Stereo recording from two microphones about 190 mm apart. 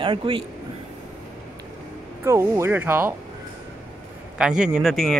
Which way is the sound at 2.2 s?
15° right (ahead or behind).